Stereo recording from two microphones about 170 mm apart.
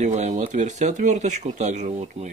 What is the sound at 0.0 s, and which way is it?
Speech, 45° right (ahead or behind).